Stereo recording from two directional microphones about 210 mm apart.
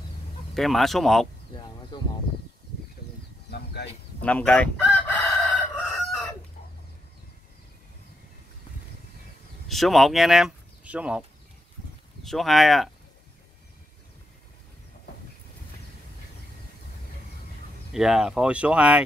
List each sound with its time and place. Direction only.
0.6 s speech: centre (ahead or behind)
1.9 s speech: 20° left (ahead or behind)
3.4 s a sound: 50° left (ahead or behind)
4.2 s chicken: 5° left (ahead or behind)
9.7 s speech: centre (ahead or behind)
17.9 s speech: centre (ahead or behind)